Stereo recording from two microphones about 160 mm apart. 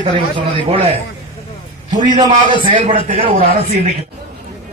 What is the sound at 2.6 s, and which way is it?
Speech, 30° right (ahead or behind).